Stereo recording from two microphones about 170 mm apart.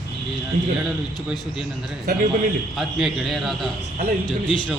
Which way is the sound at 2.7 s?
Centre (ahead or behind).